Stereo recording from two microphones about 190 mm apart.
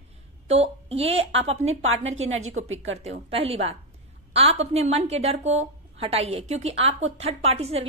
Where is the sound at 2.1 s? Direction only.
90° right.